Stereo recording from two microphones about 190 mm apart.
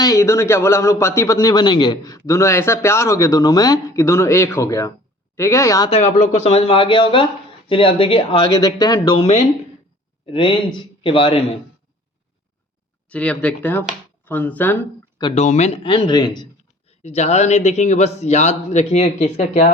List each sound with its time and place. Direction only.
0.0 s speech: 15° left (ahead or behind)
5.9 s a man's voice: 40° left (ahead or behind); by 9.2 s 20° left (ahead or behind)
10.3 s speech: 25° left (ahead or behind)
13.1 s speech: 5° left (ahead or behind)
15.4 s speech: 35° left (ahead or behind); by 16.5 s 20° left (ahead or behind)
17.0 s a man's voice: 35° left (ahead or behind)